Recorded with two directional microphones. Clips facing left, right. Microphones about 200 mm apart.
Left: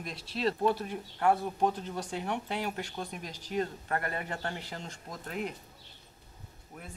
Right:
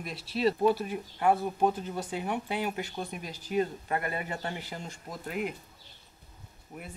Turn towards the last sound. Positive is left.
turn(degrees=-15)  # may be behind; listen again after turning